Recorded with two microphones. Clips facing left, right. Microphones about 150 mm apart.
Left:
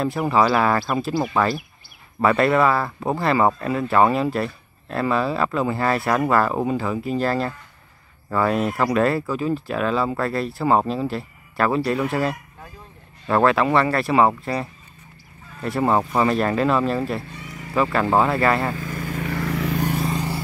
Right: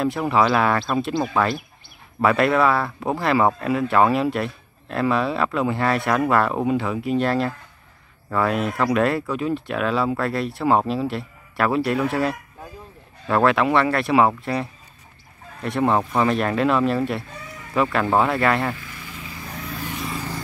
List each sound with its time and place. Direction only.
0.0 s speech: centre (ahead or behind)
18.8 s vehicle: 45° left (ahead or behind); by 19.9 s 80° left